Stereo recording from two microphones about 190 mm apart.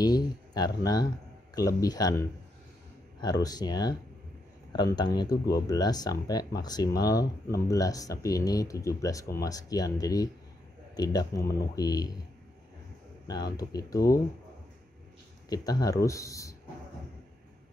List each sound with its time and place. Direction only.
0.0 s speech: 20° left (ahead or behind)
13.6 s speech: 20° left (ahead or behind)
15.5 s speech: 20° left (ahead or behind)